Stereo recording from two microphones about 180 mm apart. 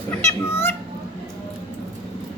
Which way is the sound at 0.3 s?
15° left (ahead or behind).